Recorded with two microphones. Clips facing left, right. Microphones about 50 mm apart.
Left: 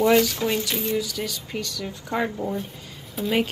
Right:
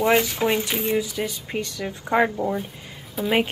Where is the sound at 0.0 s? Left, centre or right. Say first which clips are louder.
Left 1 dB; right.